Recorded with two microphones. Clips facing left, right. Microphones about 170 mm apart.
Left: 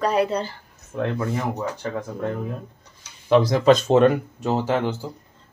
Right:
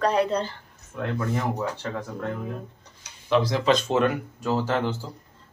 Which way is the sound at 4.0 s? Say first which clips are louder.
Left 6 dB; 20° left (ahead or behind).